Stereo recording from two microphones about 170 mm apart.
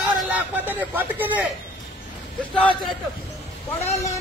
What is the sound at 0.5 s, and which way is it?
Speech, 10° right (ahead or behind).